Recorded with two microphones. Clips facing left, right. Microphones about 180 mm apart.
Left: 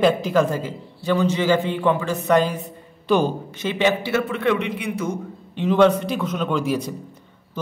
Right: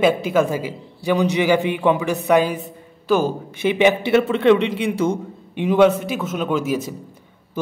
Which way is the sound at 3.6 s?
15° right (ahead or behind).